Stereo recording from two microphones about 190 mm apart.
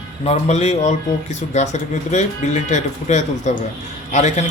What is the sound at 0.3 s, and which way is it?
Speech, 35° left (ahead or behind).